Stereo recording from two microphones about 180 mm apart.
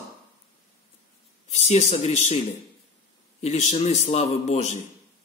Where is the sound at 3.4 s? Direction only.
40° left (ahead or behind).